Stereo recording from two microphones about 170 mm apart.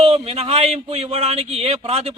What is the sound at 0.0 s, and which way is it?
A man's voice, 35° right (ahead or behind).